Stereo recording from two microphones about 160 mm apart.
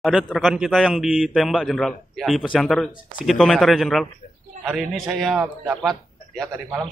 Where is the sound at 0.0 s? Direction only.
Centre (ahead or behind).